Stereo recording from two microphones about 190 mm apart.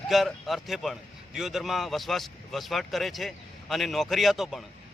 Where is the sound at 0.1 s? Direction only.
Centre (ahead or behind).